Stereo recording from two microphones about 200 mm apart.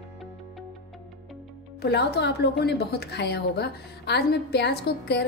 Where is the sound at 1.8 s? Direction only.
55° left (ahead or behind).